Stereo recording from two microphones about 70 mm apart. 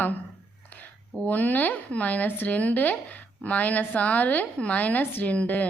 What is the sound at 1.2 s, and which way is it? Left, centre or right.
A woman's voice, left.